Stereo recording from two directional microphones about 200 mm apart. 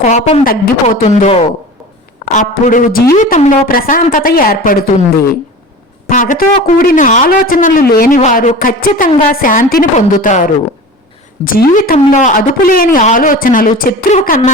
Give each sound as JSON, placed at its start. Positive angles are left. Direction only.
{"t": 0.0, "sound": "a man's voice", "side_deg": 35}
{"t": 6.1, "sound": "a man's voice", "side_deg": 40}